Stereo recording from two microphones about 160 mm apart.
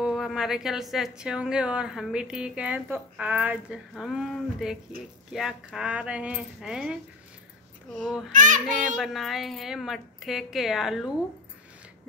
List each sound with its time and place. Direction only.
0.0 s a woman's voice: centre (ahead or behind)
8.3 s child singing: 55° right (ahead or behind)
8.9 s a woman's voice: centre (ahead or behind)